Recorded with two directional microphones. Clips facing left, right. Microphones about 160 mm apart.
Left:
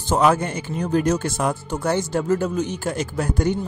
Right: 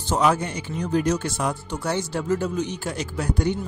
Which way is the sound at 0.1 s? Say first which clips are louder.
Left 3 dB; 55° left (ahead or behind).